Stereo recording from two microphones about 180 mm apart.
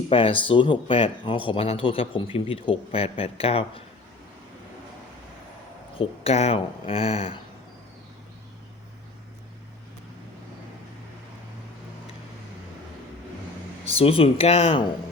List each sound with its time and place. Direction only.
0.1 s speech: 30° left (ahead or behind)
6.0 s speech: 35° left (ahead or behind)
13.8 s speech: 30° left (ahead or behind)